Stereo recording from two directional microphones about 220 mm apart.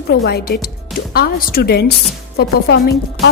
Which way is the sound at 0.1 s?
45° left (ahead or behind).